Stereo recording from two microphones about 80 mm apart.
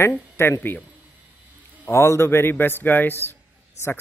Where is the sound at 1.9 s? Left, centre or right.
Left.